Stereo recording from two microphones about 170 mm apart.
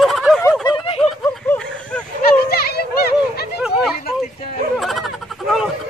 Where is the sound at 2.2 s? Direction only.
65° left (ahead or behind).